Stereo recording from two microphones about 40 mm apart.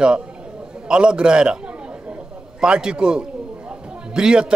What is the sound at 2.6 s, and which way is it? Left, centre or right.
A man's voice, right.